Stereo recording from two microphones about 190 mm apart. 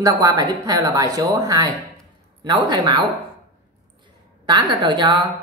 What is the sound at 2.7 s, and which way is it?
Speech, 25° right (ahead or behind).